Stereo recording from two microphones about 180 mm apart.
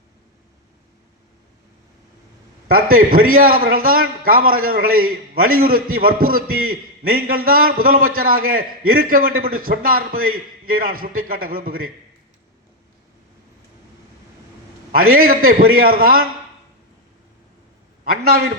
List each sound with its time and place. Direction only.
2.6 s a man's voice: 55° right (ahead or behind)
14.9 s a man's voice: 55° right (ahead or behind)
18.0 s a man's voice: 60° right (ahead or behind)